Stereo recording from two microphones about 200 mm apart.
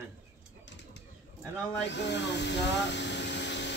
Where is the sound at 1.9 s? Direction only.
60° left (ahead or behind).